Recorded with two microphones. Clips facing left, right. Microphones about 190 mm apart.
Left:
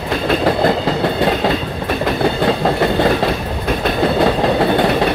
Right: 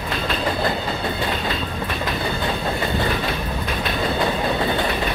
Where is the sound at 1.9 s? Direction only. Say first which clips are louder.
Left 11 dB; 55° left (ahead or behind).